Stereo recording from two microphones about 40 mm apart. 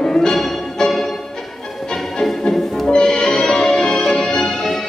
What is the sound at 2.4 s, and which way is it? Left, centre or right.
Music, centre.